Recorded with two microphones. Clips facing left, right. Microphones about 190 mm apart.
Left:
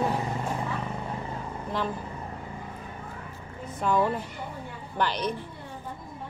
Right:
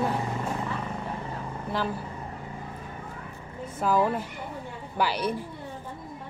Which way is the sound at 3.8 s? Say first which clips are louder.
Right 1 dB; 5° right (ahead or behind).